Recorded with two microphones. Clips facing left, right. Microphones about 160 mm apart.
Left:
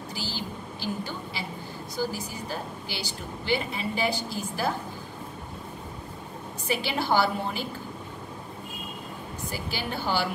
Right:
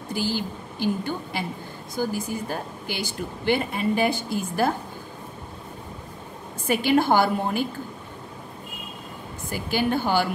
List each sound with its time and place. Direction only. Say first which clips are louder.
0.1 s a woman's voice: right 9 dB; 55° right (ahead or behind)
6.7 s a woman's voice: right 7 dB; 50° right (ahead or behind)
9.5 s a woman's voice: right 10 dB; 50° right (ahead or behind)